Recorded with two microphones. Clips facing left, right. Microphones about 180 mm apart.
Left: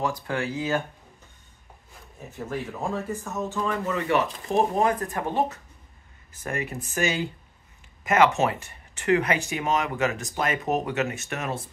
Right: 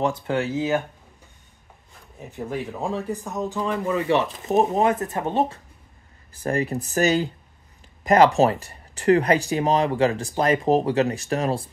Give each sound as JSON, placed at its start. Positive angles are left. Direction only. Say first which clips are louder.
{"t": 0.3, "sound": "speech", "louder": "right 4 dB", "side_deg": -20}
{"t": 2.3, "sound": "speech", "louder": "right 3 dB", "side_deg": -15}
{"t": 4.1, "sound": "speech", "louder": "right 2 dB", "side_deg": -25}